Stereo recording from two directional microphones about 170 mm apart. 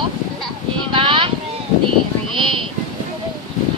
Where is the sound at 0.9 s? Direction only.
30° right (ahead or behind).